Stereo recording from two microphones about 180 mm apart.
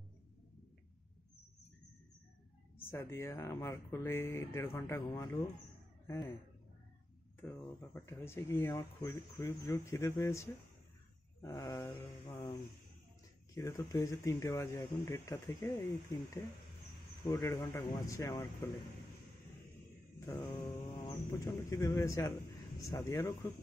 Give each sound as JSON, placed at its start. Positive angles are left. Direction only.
{"t": 2.8, "sound": "speech", "side_deg": 15}
{"t": 7.3, "sound": "speech", "side_deg": 10}
{"t": 13.6, "sound": "speech", "side_deg": 20}
{"t": 17.3, "sound": "speech", "side_deg": 20}
{"t": 20.2, "sound": "speech", "side_deg": 20}